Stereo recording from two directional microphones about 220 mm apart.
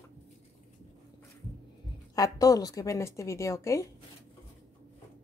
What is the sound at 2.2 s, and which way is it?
A woman's voice, 15° left (ahead or behind).